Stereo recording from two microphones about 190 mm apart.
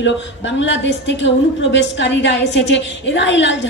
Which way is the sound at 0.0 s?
70° left (ahead or behind).